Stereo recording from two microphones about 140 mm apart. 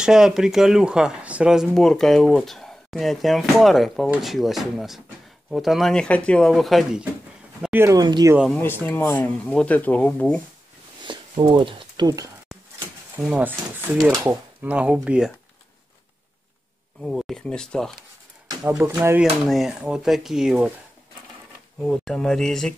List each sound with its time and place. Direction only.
0.0 s speech: 5° right (ahead or behind)
7.6 s speech: 15° right (ahead or behind)
7.9 s speech: 30° right (ahead or behind)
8.5 s speech: 15° left (ahead or behind)
11.1 s speech: 35° right (ahead or behind)
13.1 s speech: 10° right (ahead or behind)
17.0 s speech: centre (ahead or behind)
18.8 s speech: 20° right (ahead or behind)
19.4 s speech: centre (ahead or behind)
21.8 s speech: 5° left (ahead or behind)